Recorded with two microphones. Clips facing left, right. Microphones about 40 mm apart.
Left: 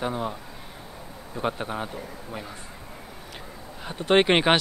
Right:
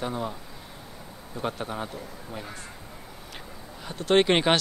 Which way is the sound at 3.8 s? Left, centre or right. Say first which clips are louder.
Left 1 dB; centre.